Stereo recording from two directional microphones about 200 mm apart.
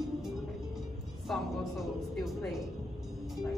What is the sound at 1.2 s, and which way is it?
A woman's voice, centre (ahead or behind).